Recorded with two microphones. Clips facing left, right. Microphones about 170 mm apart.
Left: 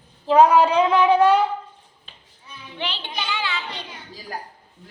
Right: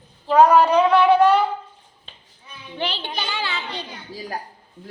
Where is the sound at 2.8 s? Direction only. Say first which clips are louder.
Right 3 dB; 35° right (ahead or behind).